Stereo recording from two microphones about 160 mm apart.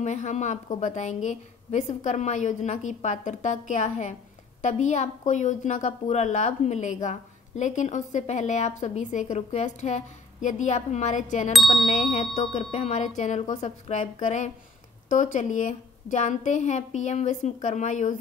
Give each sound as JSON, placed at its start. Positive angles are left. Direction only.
{"t": 0.0, "sound": "a woman's voice", "side_deg": 50}
{"t": 11.5, "sound": "a sound", "side_deg": 0}
{"t": 11.9, "sound": "a woman's voice", "side_deg": 45}